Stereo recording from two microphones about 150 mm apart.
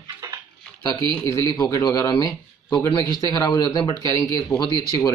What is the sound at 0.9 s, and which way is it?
Speech, 20° left (ahead or behind).